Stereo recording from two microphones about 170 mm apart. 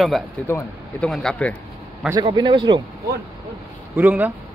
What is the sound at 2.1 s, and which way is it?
Speech, 25° right (ahead or behind).